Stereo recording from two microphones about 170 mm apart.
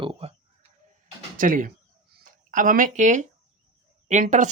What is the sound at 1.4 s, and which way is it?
Speech, 55° right (ahead or behind).